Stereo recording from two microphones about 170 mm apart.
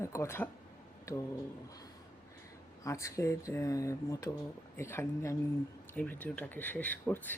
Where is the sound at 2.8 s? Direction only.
20° left (ahead or behind).